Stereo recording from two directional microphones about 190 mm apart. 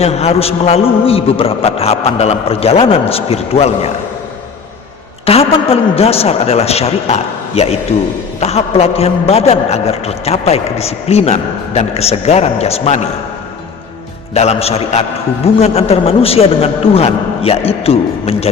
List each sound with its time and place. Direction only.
0.0 s a man's voice: 35° left (ahead or behind)
5.2 s a man's voice: 30° left (ahead or behind)
14.3 s a man's voice: 35° left (ahead or behind)